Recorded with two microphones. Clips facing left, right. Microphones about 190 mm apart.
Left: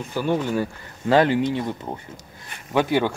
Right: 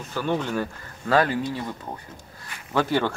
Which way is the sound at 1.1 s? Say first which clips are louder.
Left 4 dB; 25° left (ahead or behind).